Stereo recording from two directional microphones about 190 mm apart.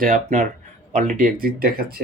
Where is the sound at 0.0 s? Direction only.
40° right (ahead or behind).